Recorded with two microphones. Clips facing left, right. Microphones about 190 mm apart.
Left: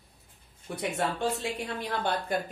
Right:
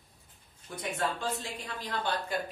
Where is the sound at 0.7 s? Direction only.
70° left (ahead or behind).